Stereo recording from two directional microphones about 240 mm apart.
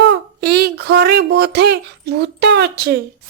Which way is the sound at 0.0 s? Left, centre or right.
Right.